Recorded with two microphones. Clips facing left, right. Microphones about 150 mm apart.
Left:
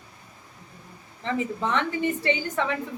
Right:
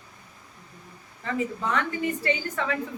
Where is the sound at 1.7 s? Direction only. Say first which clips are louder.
Left 3 dB; 25° left (ahead or behind).